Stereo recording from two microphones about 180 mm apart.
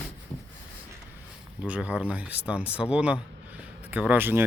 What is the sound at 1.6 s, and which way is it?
Speech, 10° right (ahead or behind).